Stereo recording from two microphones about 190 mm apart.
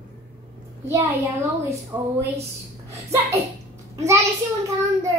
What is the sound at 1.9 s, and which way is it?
Speech, 20° right (ahead or behind).